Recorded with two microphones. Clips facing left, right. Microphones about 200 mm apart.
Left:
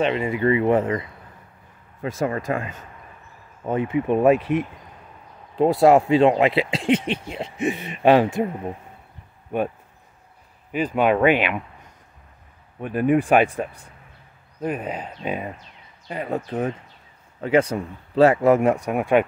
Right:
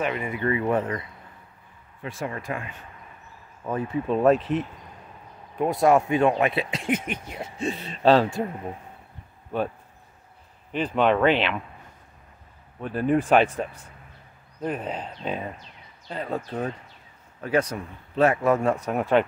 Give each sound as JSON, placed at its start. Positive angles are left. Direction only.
{"t": 0.0, "sound": "speech", "side_deg": 25}
{"t": 2.0, "sound": "speech", "side_deg": 40}
{"t": 3.6, "sound": "speech", "side_deg": 20}
{"t": 5.6, "sound": "speech", "side_deg": 30}
{"t": 9.5, "sound": "speech", "side_deg": 15}
{"t": 10.7, "sound": "speech", "side_deg": 10}
{"t": 12.8, "sound": "speech", "side_deg": 15}